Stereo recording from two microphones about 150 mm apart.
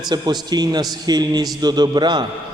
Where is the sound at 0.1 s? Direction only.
25° right (ahead or behind).